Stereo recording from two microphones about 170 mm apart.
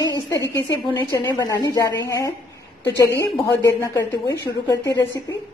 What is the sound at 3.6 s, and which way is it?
A woman's voice, 25° left (ahead or behind).